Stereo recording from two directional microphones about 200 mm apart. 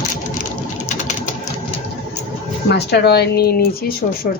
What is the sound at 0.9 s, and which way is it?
Sewing machine, 35° left (ahead or behind).